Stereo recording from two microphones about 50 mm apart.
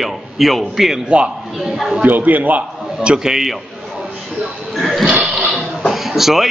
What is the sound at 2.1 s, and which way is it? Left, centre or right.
Speech, right.